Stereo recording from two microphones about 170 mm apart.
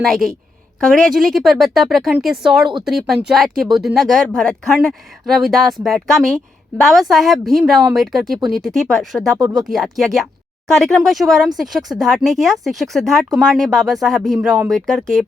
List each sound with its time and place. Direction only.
0.0 s a woman's voice: centre (ahead or behind)
9.4 s speech: 25° right (ahead or behind)
9.6 s speech: centre (ahead or behind)